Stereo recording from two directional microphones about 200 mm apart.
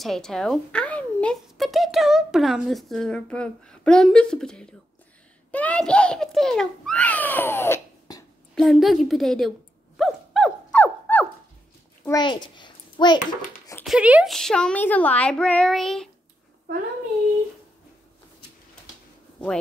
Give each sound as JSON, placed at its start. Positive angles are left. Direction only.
{"t": 0.0, "sound": "a woman's voice", "side_deg": 0}
{"t": 8.5, "sound": "a woman's voice", "side_deg": 0}
{"t": 9.9, "sound": "a sound", "side_deg": 0}
{"t": 12.1, "sound": "a child's voice", "side_deg": 20}
{"t": 13.8, "sound": "a woman's voice", "side_deg": -5}